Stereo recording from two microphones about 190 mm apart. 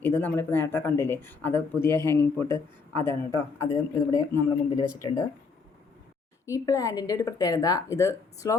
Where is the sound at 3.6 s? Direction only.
20° left (ahead or behind).